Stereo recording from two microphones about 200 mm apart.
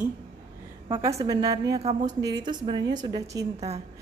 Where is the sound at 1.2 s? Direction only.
20° right (ahead or behind).